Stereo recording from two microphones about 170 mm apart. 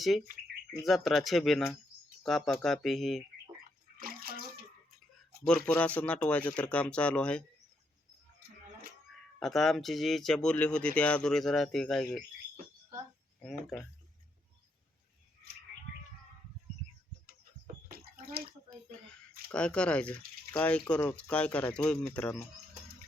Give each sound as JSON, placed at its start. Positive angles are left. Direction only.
{"t": 0.0, "sound": "speech", "side_deg": 0}
{"t": 3.9, "sound": "bathtub", "side_deg": -60}
{"t": 5.5, "sound": "speech", "side_deg": 10}
{"t": 9.4, "sound": "speech", "side_deg": 0}
{"t": 13.4, "sound": "speech", "side_deg": 5}
{"t": 17.8, "sound": "bathtub", "side_deg": -60}
{"t": 19.5, "sound": "speech", "side_deg": 5}